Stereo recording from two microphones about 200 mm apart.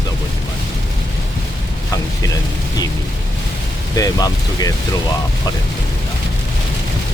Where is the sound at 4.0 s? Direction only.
20° left (ahead or behind).